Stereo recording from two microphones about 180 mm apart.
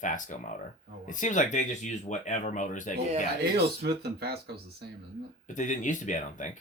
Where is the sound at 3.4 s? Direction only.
65° right (ahead or behind).